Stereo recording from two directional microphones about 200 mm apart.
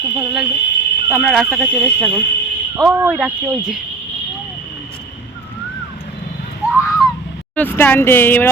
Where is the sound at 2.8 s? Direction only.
10° right (ahead or behind).